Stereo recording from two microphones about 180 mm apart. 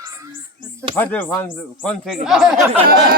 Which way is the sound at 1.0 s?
10° left (ahead or behind).